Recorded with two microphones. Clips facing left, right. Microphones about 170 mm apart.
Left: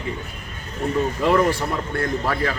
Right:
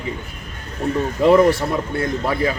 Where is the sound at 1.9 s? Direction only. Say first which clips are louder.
Right 2 dB; 15° right (ahead or behind).